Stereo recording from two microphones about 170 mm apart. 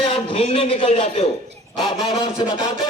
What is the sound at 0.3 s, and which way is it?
Speech, 35° left (ahead or behind).